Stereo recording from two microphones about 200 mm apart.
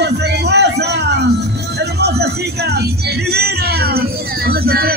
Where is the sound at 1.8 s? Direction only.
55° right (ahead or behind).